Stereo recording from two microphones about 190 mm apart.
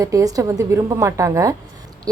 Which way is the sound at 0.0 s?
15° right (ahead or behind).